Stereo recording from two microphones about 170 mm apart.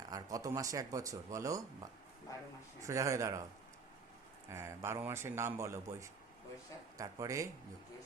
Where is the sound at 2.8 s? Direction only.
20° right (ahead or behind).